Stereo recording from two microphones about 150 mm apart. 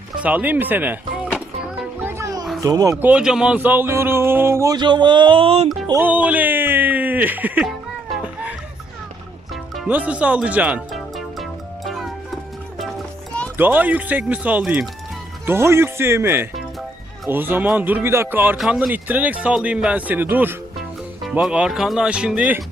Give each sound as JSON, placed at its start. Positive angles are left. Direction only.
{"t": 0.2, "sound": "speech", "side_deg": -10}
{"t": 2.0, "sound": "music", "side_deg": -15}
{"t": 2.6, "sound": "speech", "side_deg": -20}
{"t": 3.0, "sound": "speech", "side_deg": -10}
{"t": 5.9, "sound": "a sound", "side_deg": -10}
{"t": 8.1, "sound": "music", "side_deg": -10}
{"t": 9.7, "sound": "music", "side_deg": -10}
{"t": 13.6, "sound": "speech", "side_deg": -10}
{"t": 18.5, "sound": "speech", "side_deg": -5}